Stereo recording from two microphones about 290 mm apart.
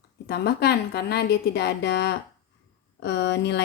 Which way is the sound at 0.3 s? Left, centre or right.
Left.